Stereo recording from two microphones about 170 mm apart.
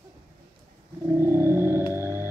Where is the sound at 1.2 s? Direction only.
15° right (ahead or behind).